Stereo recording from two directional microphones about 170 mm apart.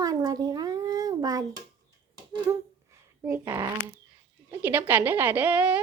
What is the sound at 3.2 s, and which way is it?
Speech, 15° right (ahead or behind).